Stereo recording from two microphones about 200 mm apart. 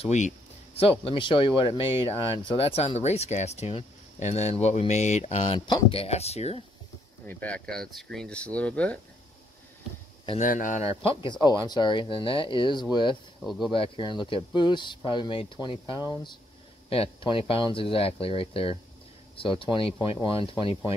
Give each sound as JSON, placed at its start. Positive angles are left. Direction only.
{"t": 0.0, "sound": "speech", "side_deg": 35}
{"t": 7.2, "sound": "speech", "side_deg": 5}
{"t": 10.4, "sound": "speech", "side_deg": 40}
{"t": 13.4, "sound": "speech", "side_deg": 0}
{"t": 13.7, "sound": "speech", "side_deg": 25}
{"t": 16.9, "sound": "speech", "side_deg": 25}